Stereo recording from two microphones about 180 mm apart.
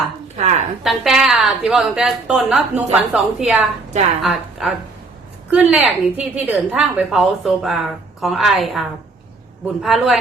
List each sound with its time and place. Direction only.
0.3 s speech: 40° right (ahead or behind)
0.9 s a woman's voice: centre (ahead or behind)